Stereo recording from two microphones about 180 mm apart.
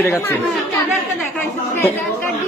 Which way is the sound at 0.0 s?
15° left (ahead or behind).